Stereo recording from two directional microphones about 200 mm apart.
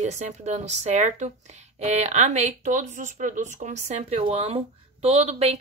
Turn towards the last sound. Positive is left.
turn(degrees=-35)  # may be behind; listen again after turning